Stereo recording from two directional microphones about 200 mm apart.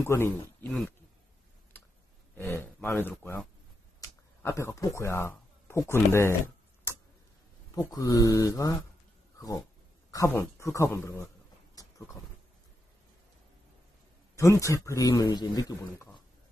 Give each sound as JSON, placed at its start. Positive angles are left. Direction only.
{"t": 0.0, "sound": "speech", "side_deg": 10}
{"t": 2.3, "sound": "speech", "side_deg": 10}
{"t": 4.4, "sound": "speech", "side_deg": 15}
{"t": 10.1, "sound": "speech", "side_deg": 15}
{"t": 11.8, "sound": "vehicle", "side_deg": 15}
{"t": 14.3, "sound": "speech", "side_deg": 15}